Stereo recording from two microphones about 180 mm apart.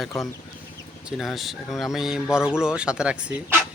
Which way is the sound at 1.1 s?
Centre (ahead or behind).